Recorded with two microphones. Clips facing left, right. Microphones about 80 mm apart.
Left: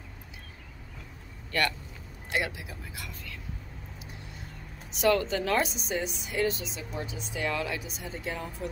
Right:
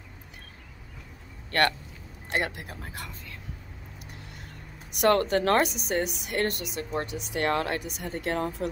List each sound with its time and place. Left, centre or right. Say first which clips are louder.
2.2 s speech: right 2 dB; right
4.0 s vehicle: right 1 dB; right
5.0 s speech: right 3 dB; right